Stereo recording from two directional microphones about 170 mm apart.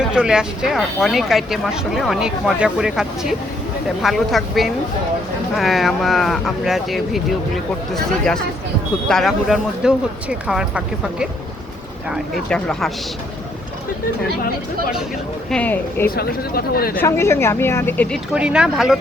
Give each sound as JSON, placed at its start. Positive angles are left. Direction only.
{"t": 0.1, "sound": "speech", "side_deg": -5}
{"t": 15.4, "sound": "speech", "side_deg": 5}
{"t": 16.0, "sound": "speech", "side_deg": 65}
{"t": 17.0, "sound": "speech", "side_deg": 15}
{"t": 18.3, "sound": "speech", "side_deg": -5}